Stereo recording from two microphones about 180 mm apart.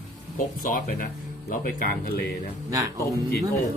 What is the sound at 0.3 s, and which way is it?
Speech, 50° left (ahead or behind).